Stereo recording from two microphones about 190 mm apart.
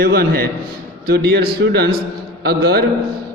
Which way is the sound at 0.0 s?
55° right (ahead or behind).